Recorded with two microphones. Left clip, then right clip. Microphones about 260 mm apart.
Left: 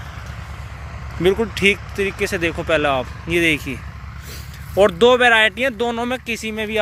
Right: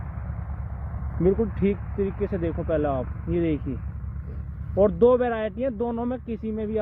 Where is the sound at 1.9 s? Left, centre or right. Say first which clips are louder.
Left 6 dB; left.